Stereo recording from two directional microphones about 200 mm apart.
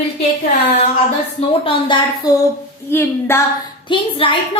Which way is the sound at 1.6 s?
25° left (ahead or behind).